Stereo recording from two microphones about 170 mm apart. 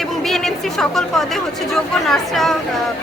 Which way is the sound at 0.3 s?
Centre (ahead or behind).